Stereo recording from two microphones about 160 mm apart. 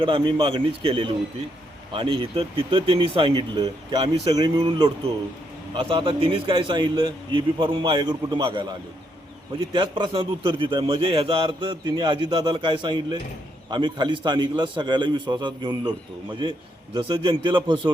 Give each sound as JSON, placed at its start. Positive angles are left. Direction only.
{"t": 0.0, "sound": "a man's voice", "side_deg": -30}
{"t": 9.7, "sound": "a man's voice", "side_deg": -30}